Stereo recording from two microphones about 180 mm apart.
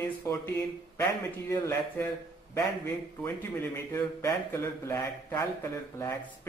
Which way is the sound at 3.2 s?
15° left (ahead or behind).